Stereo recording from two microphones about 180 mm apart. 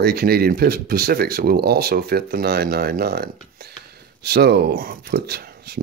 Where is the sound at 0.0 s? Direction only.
60° right (ahead or behind).